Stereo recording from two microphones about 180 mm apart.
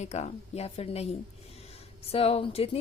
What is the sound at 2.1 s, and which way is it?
Speech, 35° left (ahead or behind).